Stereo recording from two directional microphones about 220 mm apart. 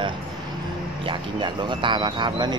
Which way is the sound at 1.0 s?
20° right (ahead or behind).